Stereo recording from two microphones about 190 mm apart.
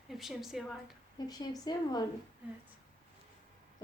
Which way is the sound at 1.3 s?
20° left (ahead or behind).